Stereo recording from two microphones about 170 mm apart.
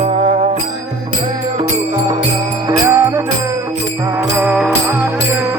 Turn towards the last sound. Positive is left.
turn(degrees=-10)  # may be behind; listen again after turning